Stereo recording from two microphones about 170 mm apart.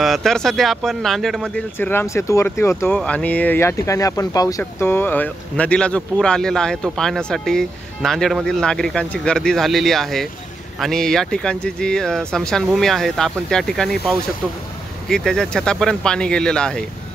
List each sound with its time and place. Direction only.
0.0 s speech: centre (ahead or behind)
1.8 s speech: 10° left (ahead or behind)